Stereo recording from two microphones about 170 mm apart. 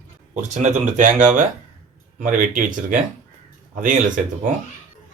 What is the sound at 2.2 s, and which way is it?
Speech, 55° right (ahead or behind).